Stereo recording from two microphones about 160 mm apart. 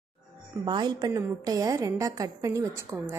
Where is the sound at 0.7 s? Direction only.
25° right (ahead or behind).